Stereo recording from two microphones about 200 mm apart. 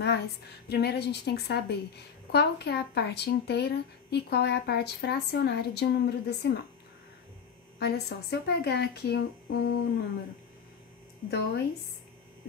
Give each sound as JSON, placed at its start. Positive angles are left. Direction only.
{"t": 0.7, "sound": "a woman's voice", "side_deg": 55}
{"t": 7.8, "sound": "a woman's voice", "side_deg": 55}
{"t": 11.2, "sound": "a woman's voice", "side_deg": 55}